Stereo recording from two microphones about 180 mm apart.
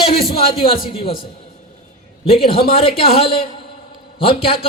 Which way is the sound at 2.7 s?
35° left (ahead or behind).